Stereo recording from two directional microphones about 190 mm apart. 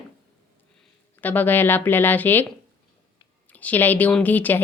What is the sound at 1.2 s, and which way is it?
Speech, 10° left (ahead or behind).